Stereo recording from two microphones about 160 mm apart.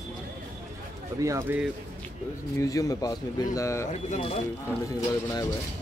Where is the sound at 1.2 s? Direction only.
15° right (ahead or behind).